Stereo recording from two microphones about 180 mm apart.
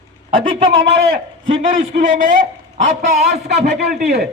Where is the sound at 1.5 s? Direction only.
45° right (ahead or behind).